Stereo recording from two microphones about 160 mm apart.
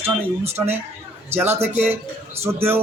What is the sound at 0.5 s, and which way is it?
Speech, 15° right (ahead or behind).